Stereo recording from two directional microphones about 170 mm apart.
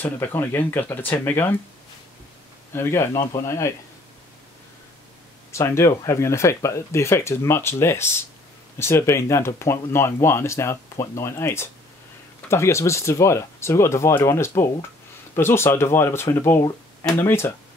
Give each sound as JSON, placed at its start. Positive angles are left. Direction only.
{"t": 0.0, "sound": "speech", "side_deg": 10}
{"t": 2.7, "sound": "speech", "side_deg": 15}
{"t": 5.5, "sound": "speech", "side_deg": 15}